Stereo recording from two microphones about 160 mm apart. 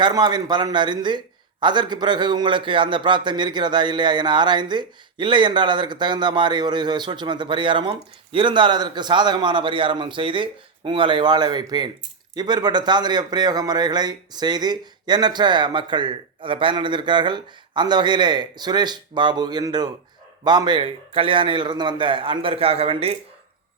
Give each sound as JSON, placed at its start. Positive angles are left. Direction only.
{"t": 0.0, "sound": "a man's voice", "side_deg": -25}